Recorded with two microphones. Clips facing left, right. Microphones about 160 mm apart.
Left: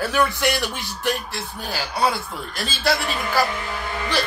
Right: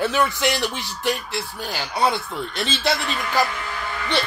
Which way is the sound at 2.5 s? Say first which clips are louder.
Right 1 dB; 25° right (ahead or behind).